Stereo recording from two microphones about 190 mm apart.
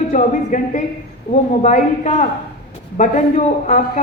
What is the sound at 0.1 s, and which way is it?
A man's voice, 40° left (ahead or behind).